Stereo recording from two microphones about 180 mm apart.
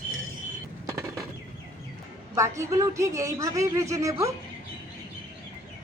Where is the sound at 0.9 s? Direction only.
15° right (ahead or behind).